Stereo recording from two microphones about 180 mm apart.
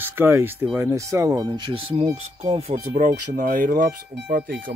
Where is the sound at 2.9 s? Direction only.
45° right (ahead or behind).